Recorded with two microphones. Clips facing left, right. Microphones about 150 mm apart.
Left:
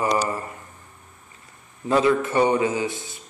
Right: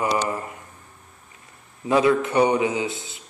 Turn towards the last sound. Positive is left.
turn(degrees=-20)  # may be behind; listen again after turning